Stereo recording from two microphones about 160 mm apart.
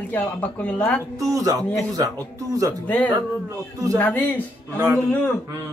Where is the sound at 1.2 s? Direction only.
20° right (ahead or behind).